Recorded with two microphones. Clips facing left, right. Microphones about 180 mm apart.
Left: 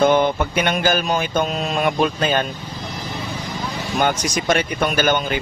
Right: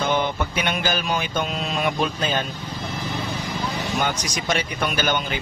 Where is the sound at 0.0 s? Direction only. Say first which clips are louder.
Left 7 dB; 50° left (ahead or behind).